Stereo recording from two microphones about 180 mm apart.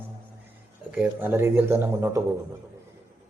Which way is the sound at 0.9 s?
10° right (ahead or behind).